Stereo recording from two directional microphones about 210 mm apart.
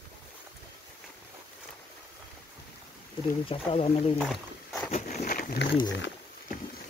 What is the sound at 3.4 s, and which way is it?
Speech, 25° left (ahead or behind).